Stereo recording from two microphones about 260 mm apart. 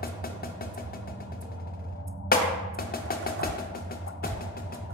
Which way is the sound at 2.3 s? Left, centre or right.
Left.